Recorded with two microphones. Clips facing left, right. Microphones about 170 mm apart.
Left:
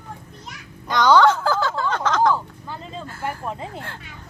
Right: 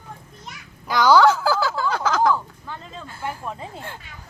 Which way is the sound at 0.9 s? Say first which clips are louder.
Even; 5° right (ahead or behind).